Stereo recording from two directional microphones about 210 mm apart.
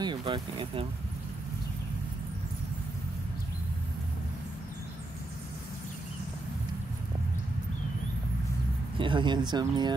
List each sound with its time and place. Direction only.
0.0 s speech: 25° right (ahead or behind)
8.9 s speech: 25° right (ahead or behind)